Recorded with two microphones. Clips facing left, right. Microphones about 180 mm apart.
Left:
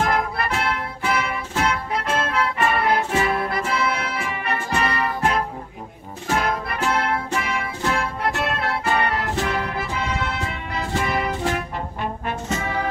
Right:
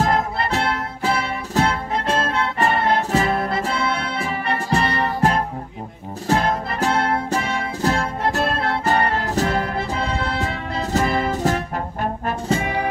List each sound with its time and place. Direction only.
0.0 s music: 30° right (ahead or behind)
3.4 s music: 30° right (ahead or behind)